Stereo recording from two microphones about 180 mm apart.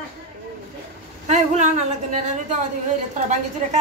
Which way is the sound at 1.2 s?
40° right (ahead or behind).